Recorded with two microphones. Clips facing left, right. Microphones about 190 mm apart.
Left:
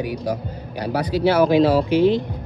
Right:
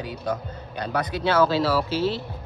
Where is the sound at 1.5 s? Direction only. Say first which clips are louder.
Left 7 dB; 15° left (ahead or behind).